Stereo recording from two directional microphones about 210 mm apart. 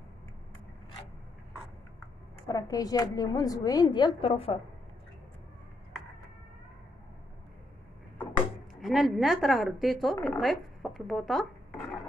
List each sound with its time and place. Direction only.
2.4 s a woman's voice: 15° left (ahead or behind)
8.8 s speech: centre (ahead or behind)